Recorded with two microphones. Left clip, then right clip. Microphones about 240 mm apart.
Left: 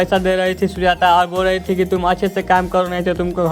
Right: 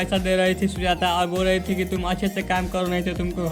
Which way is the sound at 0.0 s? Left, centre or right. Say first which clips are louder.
Left 6 dB; centre.